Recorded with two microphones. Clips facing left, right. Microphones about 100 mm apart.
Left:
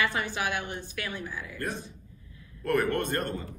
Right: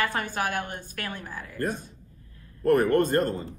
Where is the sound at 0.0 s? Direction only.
45° right (ahead or behind).